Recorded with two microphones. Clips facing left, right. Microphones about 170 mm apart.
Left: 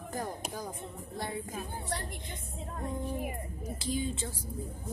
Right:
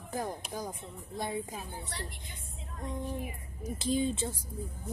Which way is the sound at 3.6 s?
20° right (ahead or behind).